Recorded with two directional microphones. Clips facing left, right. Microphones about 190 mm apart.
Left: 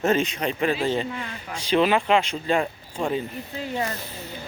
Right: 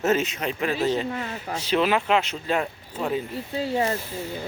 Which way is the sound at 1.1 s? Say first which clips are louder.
Right 3 dB; 40° right (ahead or behind).